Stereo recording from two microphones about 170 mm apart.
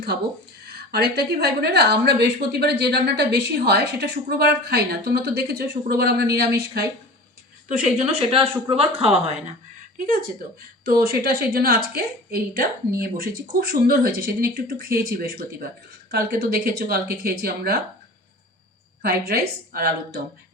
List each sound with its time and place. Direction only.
1.1 s a woman's voice: 70° right (ahead or behind)
7.7 s speech: 45° right (ahead or behind)
10.8 s a woman's voice: 65° right (ahead or behind)
19.0 s a woman's voice: 65° right (ahead or behind)